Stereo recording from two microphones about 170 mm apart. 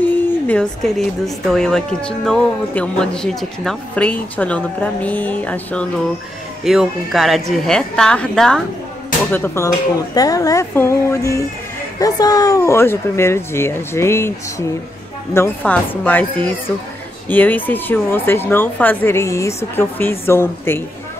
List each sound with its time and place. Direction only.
0.5 s a woman's voice: 5° left (ahead or behind)
6.6 s a woman's voice: centre (ahead or behind); by 14.3 s 15° left (ahead or behind)
15.3 s a woman's voice: 10° left (ahead or behind)